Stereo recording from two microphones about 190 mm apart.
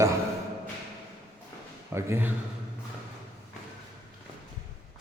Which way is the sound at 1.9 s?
15° right (ahead or behind).